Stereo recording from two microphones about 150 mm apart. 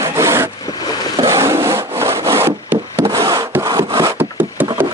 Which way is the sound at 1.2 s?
20° right (ahead or behind).